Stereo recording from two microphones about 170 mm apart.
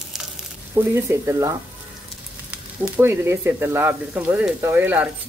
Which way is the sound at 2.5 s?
10° right (ahead or behind).